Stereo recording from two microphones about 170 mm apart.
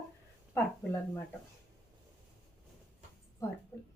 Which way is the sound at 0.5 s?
15° left (ahead or behind).